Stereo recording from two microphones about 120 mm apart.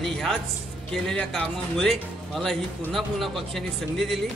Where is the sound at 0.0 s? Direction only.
5° left (ahead or behind).